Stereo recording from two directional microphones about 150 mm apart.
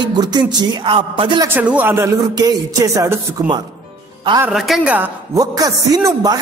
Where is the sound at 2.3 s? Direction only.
25° right (ahead or behind).